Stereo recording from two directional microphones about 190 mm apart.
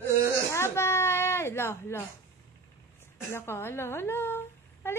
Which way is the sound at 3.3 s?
10° left (ahead or behind).